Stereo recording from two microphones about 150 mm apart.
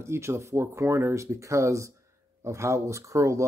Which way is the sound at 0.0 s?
15° right (ahead or behind).